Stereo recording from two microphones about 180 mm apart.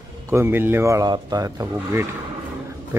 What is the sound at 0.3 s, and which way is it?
Speech, 15° right (ahead or behind).